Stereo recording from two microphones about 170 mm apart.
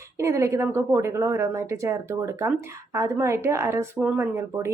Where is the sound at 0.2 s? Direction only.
15° right (ahead or behind).